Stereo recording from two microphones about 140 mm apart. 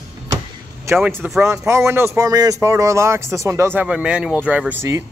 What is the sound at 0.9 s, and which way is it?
Speech, 20° right (ahead or behind).